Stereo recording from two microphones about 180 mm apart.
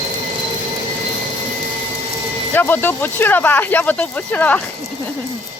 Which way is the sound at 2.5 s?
10° left (ahead or behind).